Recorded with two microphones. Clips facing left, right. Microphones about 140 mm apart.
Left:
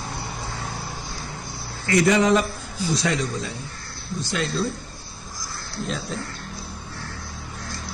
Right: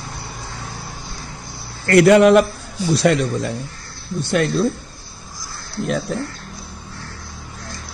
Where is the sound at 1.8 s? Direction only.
65° right (ahead or behind).